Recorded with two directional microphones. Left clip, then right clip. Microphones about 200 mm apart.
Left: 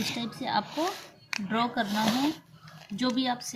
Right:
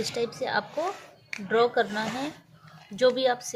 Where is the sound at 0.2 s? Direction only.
45° right (ahead or behind).